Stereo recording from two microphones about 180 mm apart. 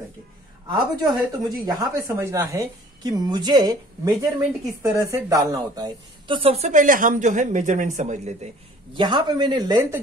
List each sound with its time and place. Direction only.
0.7 s speech: 25° right (ahead or behind); by 8.5 s 40° right (ahead or behind)
8.9 s speech: 25° right (ahead or behind)